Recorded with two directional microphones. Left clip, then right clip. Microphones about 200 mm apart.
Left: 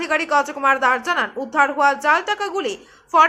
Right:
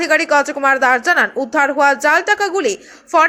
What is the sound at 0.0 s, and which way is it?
A woman's voice, 20° right (ahead or behind).